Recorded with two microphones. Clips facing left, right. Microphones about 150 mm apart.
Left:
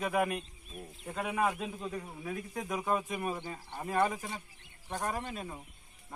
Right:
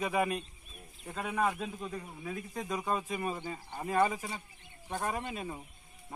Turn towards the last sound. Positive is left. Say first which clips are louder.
# right 1 dB
turn(degrees=-10)  # may be behind; listen again after turning